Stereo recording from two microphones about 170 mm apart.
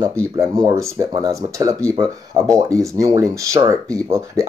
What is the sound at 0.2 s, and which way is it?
Speech, 20° right (ahead or behind).